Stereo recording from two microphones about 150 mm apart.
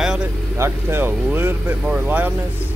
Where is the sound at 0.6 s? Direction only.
15° right (ahead or behind).